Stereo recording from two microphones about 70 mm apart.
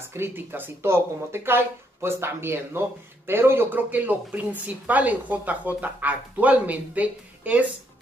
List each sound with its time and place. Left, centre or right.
0.1 s speech: right